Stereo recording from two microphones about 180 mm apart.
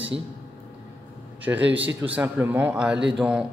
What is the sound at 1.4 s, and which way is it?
A man's voice, 10° right (ahead or behind).